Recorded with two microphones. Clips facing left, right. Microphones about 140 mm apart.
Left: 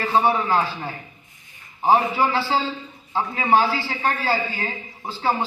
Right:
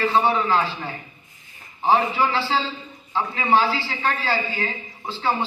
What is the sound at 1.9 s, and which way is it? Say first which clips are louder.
A man's voice: left 1 dB; 45° left (ahead or behind).